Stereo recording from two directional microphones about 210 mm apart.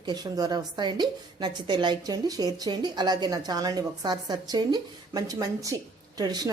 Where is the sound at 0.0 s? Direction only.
20° right (ahead or behind).